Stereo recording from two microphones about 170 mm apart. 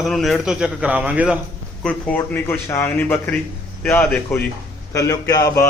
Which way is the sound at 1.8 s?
5° left (ahead or behind).